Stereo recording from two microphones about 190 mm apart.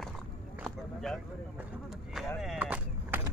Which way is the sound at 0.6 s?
Centre (ahead or behind).